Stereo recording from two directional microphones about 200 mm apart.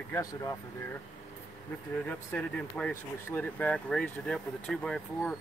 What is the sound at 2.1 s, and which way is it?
Speech, 10° left (ahead or behind).